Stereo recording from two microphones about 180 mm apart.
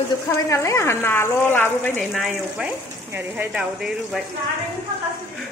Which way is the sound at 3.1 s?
10° right (ahead or behind).